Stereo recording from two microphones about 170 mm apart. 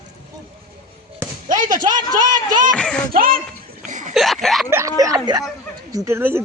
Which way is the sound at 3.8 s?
50° right (ahead or behind).